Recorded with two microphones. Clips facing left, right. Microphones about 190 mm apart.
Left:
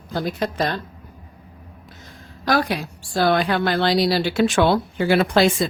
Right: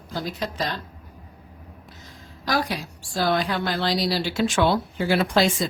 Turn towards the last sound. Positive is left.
turn(degrees=60)  # may be behind; listen again after turning